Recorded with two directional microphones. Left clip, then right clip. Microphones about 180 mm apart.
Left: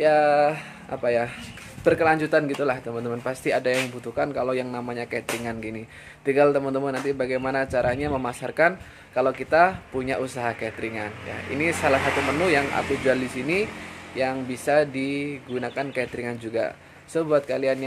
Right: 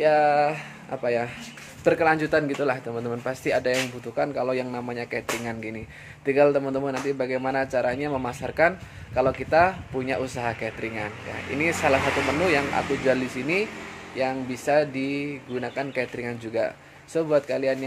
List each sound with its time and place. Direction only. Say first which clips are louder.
0.0 s a man's voice: left 1 dB; centre (ahead or behind)